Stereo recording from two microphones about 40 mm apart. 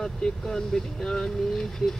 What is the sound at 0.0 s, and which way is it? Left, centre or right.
Speech, centre.